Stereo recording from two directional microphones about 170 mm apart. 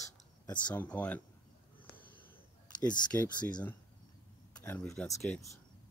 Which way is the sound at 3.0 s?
10° left (ahead or behind).